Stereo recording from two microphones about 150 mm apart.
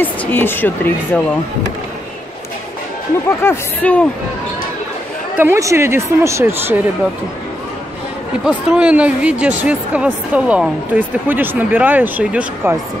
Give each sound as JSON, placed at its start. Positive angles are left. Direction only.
{"t": 0.0, "sound": "speech", "side_deg": 10}
{"t": 3.3, "sound": "speech", "side_deg": 10}
{"t": 5.4, "sound": "speech", "side_deg": -20}
{"t": 8.5, "sound": "speech", "side_deg": -10}